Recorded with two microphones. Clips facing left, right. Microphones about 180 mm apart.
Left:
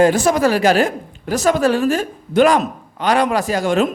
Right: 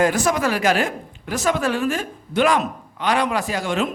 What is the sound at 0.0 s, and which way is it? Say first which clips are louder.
A woman's voice: left 5 dB; 30° left (ahead or behind).